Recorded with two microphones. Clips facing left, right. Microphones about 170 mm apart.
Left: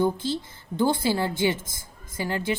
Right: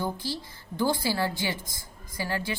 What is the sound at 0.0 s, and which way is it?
A woman's voice, 20° left (ahead or behind).